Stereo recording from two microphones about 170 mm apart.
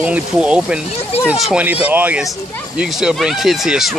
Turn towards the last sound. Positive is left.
turn(degrees=0)  # may be behind; listen again after turning